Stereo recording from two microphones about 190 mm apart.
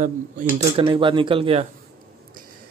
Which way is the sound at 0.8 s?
25° right (ahead or behind).